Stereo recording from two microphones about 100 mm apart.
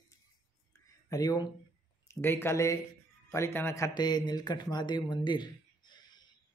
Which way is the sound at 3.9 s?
45° left (ahead or behind).